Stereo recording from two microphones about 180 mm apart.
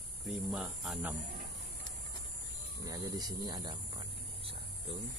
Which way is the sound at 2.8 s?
20° right (ahead or behind).